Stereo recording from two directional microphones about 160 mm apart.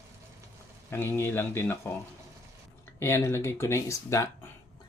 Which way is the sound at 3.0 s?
15° left (ahead or behind).